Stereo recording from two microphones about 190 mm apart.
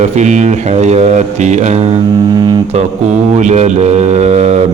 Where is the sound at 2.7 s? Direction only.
35° right (ahead or behind).